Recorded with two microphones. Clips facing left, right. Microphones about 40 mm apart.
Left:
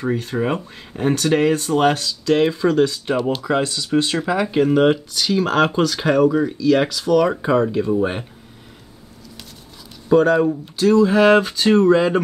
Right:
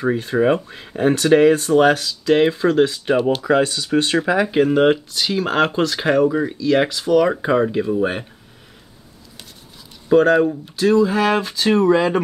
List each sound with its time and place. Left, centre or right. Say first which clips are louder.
0.0 s speech: right 4 dB; centre
10.0 s speech: right 1 dB; centre
11.1 s speech: left 5 dB; centre
11.7 s speech: left 1 dB; centre